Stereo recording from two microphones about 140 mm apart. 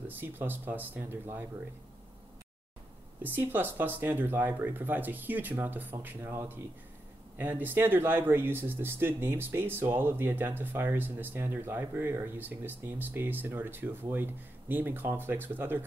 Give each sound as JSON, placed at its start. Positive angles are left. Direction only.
{"t": 0.1, "sound": "speech", "side_deg": -15}
{"t": 3.2, "sound": "speech", "side_deg": -15}